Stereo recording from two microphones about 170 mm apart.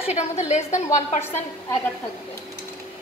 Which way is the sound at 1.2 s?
15° left (ahead or behind).